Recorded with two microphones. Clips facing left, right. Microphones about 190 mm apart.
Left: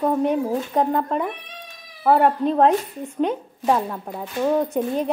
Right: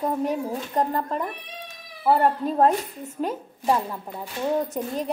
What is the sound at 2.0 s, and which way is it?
Speech, 65° left (ahead or behind).